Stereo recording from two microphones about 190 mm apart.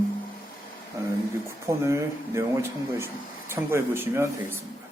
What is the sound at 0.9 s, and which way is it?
Speech, 15° right (ahead or behind).